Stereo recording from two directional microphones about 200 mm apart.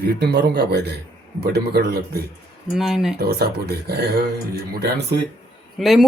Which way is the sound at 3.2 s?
50° right (ahead or behind).